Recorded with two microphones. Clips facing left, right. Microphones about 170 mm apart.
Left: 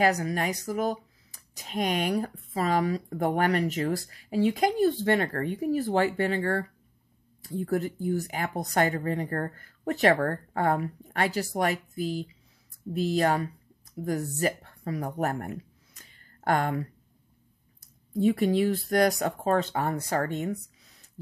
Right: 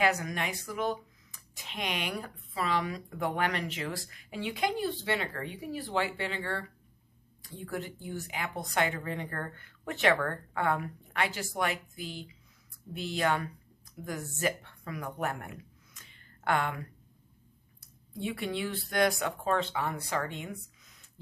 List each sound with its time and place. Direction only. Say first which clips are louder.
0.0 s speech: left 5 dB; 35° left (ahead or behind)
18.1 s speech: left 11 dB; 40° left (ahead or behind)